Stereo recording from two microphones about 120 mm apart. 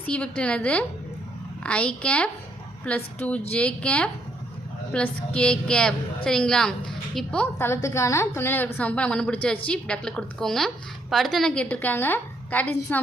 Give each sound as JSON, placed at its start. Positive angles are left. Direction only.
{"t": 0.0, "sound": "a woman's voice", "side_deg": 10}
{"t": 7.6, "sound": "a woman's voice", "side_deg": 25}